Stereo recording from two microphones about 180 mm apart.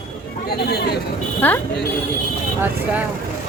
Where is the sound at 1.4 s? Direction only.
10° left (ahead or behind).